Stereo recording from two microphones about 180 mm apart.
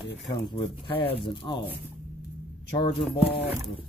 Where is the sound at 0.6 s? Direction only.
30° left (ahead or behind).